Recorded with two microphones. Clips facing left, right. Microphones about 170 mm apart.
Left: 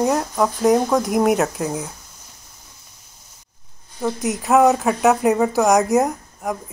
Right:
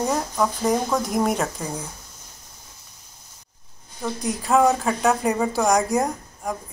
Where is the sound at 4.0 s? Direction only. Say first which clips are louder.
Left 4 dB; 20° left (ahead or behind).